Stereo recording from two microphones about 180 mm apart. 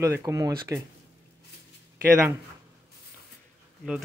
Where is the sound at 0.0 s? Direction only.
15° right (ahead or behind).